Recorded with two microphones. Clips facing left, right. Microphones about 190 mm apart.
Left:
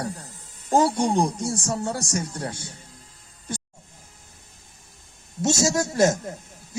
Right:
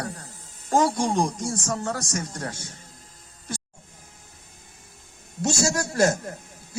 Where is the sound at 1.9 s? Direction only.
25° left (ahead or behind).